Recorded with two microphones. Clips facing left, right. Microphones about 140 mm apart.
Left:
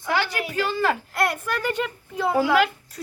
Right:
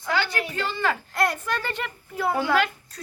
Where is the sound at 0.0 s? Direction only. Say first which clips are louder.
Left 1 dB; 10° left (ahead or behind).